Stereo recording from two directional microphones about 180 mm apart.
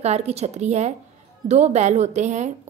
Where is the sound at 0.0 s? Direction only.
35° right (ahead or behind).